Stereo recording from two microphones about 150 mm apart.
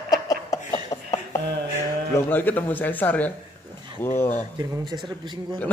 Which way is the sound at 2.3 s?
10° left (ahead or behind).